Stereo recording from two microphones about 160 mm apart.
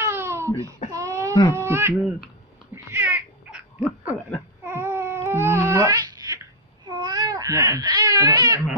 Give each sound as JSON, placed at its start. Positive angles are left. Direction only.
{"t": 0.0, "sound": "a sound", "side_deg": -15}
{"t": 1.5, "sound": "speech", "side_deg": -15}
{"t": 2.7, "sound": "baby laughter", "side_deg": -15}
{"t": 4.6, "sound": "babbling", "side_deg": -15}
{"t": 6.9, "sound": "baby cry", "side_deg": -25}